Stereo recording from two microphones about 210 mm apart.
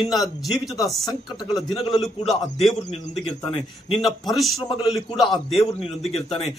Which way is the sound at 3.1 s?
25° left (ahead or behind).